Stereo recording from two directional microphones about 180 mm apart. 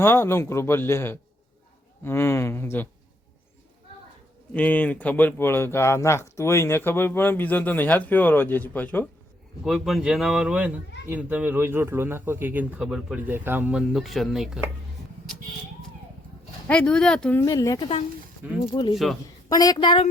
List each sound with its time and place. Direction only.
0.0 s speech: 15° left (ahead or behind)
4.5 s speech: 10° left (ahead or behind)
9.6 s a man's voice: centre (ahead or behind)
16.6 s speech: 5° left (ahead or behind)
17.4 s a woman's voice: 20° left (ahead or behind)